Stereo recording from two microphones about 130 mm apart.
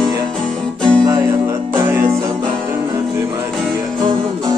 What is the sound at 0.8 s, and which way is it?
Music, 5° left (ahead or behind).